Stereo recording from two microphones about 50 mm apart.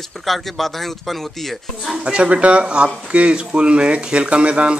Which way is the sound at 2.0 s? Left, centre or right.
Right.